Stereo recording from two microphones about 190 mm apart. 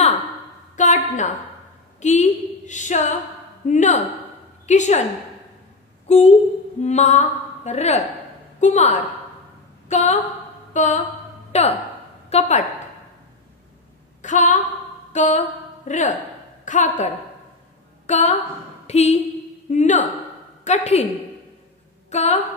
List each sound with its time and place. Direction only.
0.7 s a woman's voice: 40° left (ahead or behind)
6.0 s a sound: 35° left (ahead or behind)
6.8 s a woman's voice: 35° left (ahead or behind)
10.7 s a sound: 40° left (ahead or behind)
11.5 s a woman's voice: 35° left (ahead or behind)
14.2 s a woman's voice: 40° left (ahead or behind)
19.7 s a sound: 40° left (ahead or behind)
20.6 s a woman's voice: 35° left (ahead or behind)
22.1 s a woman's voice: 35° left (ahead or behind)